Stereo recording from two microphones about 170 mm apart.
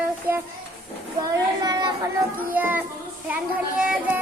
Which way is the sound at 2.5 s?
10° right (ahead or behind).